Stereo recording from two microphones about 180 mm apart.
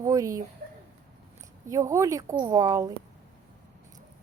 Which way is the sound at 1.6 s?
15° right (ahead or behind).